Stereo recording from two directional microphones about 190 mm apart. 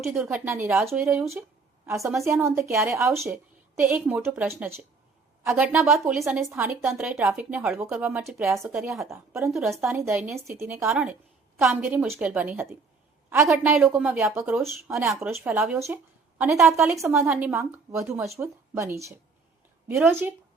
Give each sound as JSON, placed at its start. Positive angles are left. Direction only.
{"t": 0.1, "sound": "speech", "side_deg": 0}
{"t": 0.4, "sound": "a woman's voice", "side_deg": -15}
{"t": 1.9, "sound": "a woman's voice", "side_deg": -15}
{"t": 6.2, "sound": "a woman's voice", "side_deg": -15}
{"t": 9.0, "sound": "a woman's voice", "side_deg": -15}
{"t": 9.7, "sound": "speech", "side_deg": 0}
{"t": 10.0, "sound": "a woman's voice", "side_deg": -15}